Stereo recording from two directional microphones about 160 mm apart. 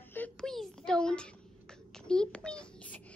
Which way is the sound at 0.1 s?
5° left (ahead or behind).